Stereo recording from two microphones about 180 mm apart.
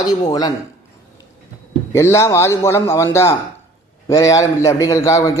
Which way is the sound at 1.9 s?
15° left (ahead or behind).